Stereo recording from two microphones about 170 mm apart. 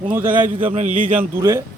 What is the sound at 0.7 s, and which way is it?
Speech, 45° right (ahead or behind).